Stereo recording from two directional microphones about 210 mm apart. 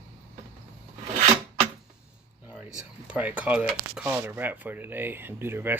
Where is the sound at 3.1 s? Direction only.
5° right (ahead or behind).